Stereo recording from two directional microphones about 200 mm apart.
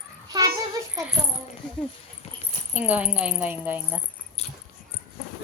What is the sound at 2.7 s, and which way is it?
Speech, 5° right (ahead or behind).